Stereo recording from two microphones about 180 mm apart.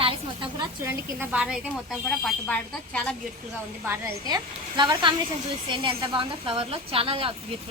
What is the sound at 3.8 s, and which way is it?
A woman's voice, 10° right (ahead or behind).